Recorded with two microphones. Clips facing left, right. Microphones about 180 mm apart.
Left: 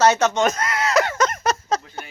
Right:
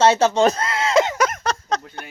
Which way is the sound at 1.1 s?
5° right (ahead or behind).